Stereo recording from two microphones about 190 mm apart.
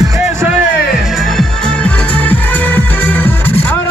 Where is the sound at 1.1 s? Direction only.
Centre (ahead or behind).